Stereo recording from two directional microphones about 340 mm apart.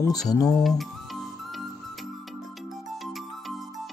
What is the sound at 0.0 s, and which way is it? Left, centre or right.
Speech, centre.